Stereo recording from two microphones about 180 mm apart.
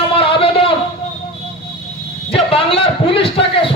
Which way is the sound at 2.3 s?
30° left (ahead or behind).